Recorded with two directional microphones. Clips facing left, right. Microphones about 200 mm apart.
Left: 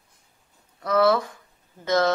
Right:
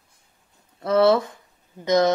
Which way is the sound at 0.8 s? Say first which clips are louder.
Right 3 dB; 25° right (ahead or behind).